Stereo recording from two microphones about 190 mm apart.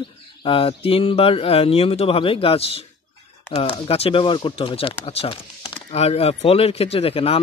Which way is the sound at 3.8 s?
30° left (ahead or behind).